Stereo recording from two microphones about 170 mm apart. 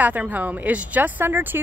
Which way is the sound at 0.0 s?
10° right (ahead or behind).